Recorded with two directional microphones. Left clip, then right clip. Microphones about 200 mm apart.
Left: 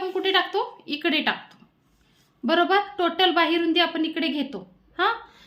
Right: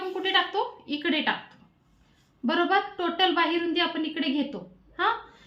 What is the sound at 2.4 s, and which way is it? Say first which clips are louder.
A woman's voice: left 4 dB; 50° left (ahead or behind).